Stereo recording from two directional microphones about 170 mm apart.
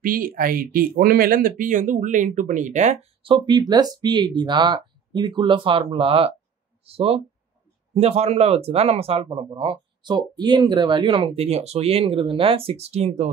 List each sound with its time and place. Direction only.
0.0 s speech: 55° right (ahead or behind); by 13.3 s 40° right (ahead or behind)